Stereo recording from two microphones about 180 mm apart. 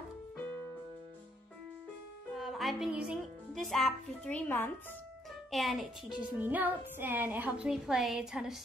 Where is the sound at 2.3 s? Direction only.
Centre (ahead or behind).